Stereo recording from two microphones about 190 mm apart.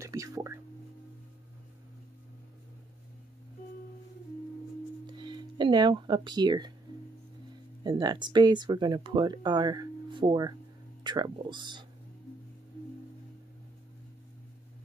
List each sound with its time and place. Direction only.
0.0 s a sound: 15° right (ahead or behind)
5.1 s speech: 25° right (ahead or behind)
7.8 s speech: 20° right (ahead or behind)